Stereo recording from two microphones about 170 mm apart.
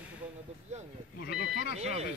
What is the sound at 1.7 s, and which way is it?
Speech, 40° right (ahead or behind).